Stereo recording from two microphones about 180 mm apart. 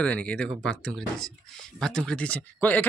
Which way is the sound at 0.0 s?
5° left (ahead or behind).